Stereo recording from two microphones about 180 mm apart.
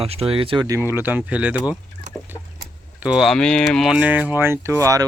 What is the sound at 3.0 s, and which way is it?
Speech, 5° right (ahead or behind).